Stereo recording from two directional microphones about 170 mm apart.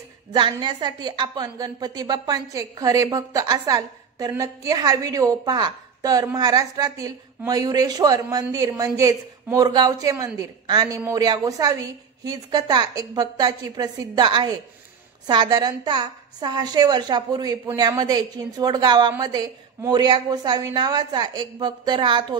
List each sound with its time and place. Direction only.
0.3 s a woman's voice: 25° right (ahead or behind)